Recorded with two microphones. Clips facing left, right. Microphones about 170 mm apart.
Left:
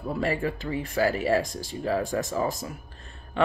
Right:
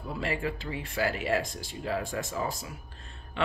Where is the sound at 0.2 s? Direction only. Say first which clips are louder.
Left 4 dB; 40° left (ahead or behind).